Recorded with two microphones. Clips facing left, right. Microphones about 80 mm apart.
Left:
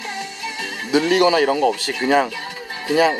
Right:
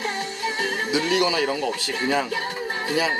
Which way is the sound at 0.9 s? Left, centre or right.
Left.